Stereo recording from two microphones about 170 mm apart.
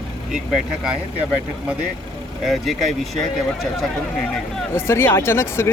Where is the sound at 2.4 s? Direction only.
Centre (ahead or behind).